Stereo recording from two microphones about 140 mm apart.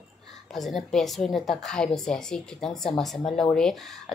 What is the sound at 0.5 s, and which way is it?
A woman's voice, centre (ahead or behind).